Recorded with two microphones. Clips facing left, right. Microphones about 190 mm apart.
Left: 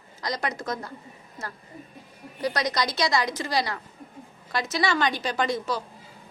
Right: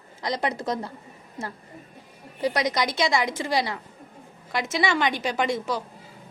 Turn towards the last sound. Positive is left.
turn(degrees=-20)  # may be behind; listen again after turning